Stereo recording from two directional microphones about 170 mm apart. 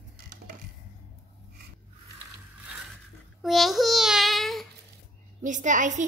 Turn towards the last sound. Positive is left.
turn(degrees=-45)  # may be behind; listen again after turning